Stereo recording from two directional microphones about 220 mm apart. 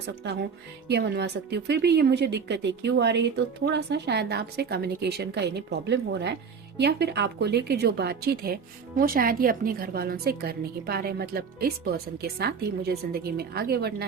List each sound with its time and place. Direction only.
0.2 s a woman's voice: 50° right (ahead or behind)